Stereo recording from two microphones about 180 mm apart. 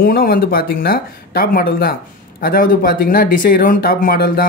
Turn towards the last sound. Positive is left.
turn(degrees=50)  # may be behind; listen again after turning